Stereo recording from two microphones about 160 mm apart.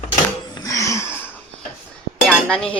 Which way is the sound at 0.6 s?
20° left (ahead or behind).